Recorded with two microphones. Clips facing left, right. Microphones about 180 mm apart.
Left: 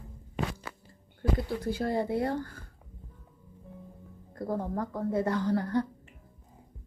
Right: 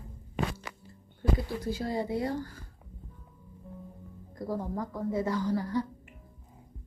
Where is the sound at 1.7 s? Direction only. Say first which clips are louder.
Left 2 dB; 55° left (ahead or behind).